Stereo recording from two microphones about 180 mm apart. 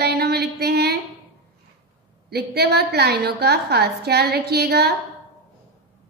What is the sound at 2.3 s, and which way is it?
A woman's voice, 65° right (ahead or behind).